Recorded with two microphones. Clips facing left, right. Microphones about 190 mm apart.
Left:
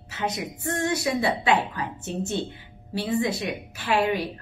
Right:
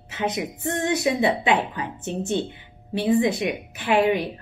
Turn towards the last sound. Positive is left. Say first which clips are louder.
# right 4 dB
turn(degrees=-20)  # may be behind; listen again after turning